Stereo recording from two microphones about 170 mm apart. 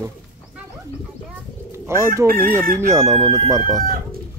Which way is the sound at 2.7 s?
20° right (ahead or behind).